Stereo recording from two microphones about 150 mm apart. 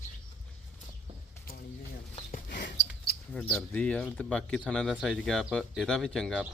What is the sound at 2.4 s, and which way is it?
Mouse, 60° left (ahead or behind).